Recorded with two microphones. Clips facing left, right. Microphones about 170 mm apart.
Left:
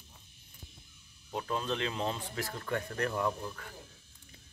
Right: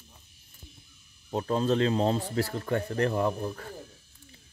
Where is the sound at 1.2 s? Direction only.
40° right (ahead or behind).